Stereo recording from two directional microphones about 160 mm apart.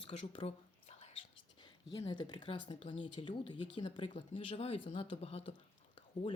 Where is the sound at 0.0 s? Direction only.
35° left (ahead or behind).